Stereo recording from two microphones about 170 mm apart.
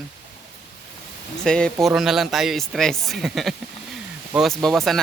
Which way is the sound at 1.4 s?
5° left (ahead or behind).